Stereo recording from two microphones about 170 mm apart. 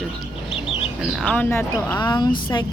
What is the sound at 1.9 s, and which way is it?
Speech, 25° left (ahead or behind).